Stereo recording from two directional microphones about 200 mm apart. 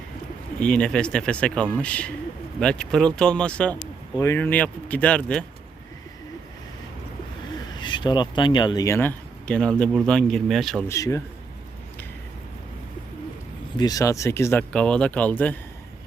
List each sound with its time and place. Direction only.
0.6 s speech: 5° left (ahead or behind)
7.8 s speech: 20° left (ahead or behind); by 10.8 s centre (ahead or behind)
10.8 s speech: 15° left (ahead or behind)
13.7 s speech: 20° left (ahead or behind)